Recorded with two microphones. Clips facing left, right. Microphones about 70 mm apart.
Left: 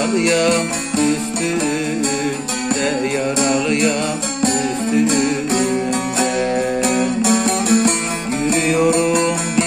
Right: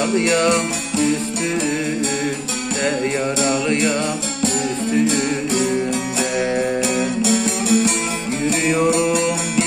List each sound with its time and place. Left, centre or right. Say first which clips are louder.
0.5 s music: left 1 dB; left
5.0 s music: left 2 dB; left